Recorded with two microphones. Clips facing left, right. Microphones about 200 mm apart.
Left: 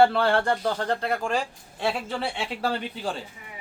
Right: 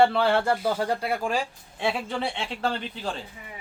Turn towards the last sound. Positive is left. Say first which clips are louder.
# left 1 dB
turn(degrees=5)  # may be behind; listen again after turning